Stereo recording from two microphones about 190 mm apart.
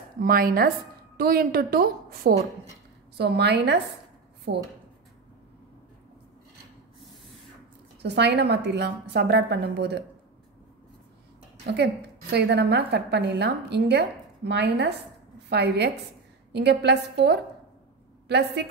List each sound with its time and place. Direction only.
0.2 s a woman's voice: 50° right (ahead or behind)
8.0 s a woman's voice: 60° right (ahead or behind)
11.7 s a woman's voice: 60° right (ahead or behind)